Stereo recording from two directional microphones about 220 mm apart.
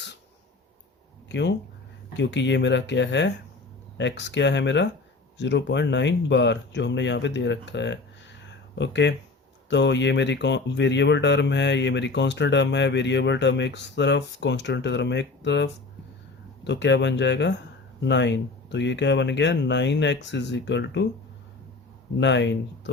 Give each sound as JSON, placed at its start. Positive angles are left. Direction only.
{"t": 1.3, "sound": "speech", "side_deg": 50}
{"t": 22.2, "sound": "speech", "side_deg": 55}